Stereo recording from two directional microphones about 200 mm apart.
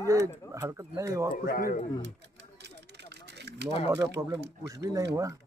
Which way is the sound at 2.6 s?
60° right (ahead or behind).